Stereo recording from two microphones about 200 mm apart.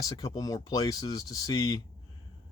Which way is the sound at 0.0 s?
15° left (ahead or behind).